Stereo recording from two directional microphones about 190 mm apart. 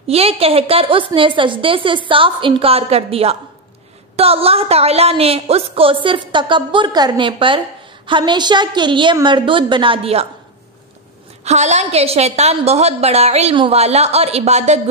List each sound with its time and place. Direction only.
0.0 s a woman's voice: 30° right (ahead or behind)
11.4 s a woman's voice: 35° right (ahead or behind)